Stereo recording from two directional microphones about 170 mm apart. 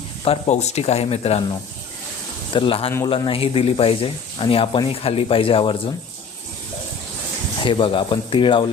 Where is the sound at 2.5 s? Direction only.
30° left (ahead or behind).